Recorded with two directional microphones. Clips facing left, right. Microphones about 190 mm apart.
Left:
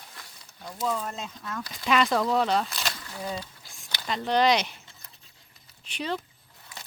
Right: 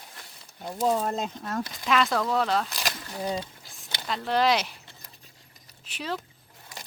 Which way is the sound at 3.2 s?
20° right (ahead or behind).